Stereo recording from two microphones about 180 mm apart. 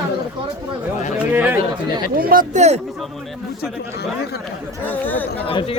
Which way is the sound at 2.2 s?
50° right (ahead or behind).